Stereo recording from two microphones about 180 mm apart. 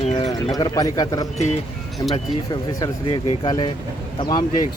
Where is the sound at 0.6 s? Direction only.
20° left (ahead or behind).